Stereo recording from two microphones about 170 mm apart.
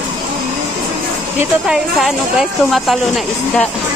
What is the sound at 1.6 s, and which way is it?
Speech, 5° right (ahead or behind).